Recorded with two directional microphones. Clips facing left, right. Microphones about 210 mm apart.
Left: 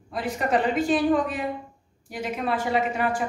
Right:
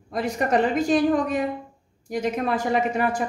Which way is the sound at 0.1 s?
45° right (ahead or behind).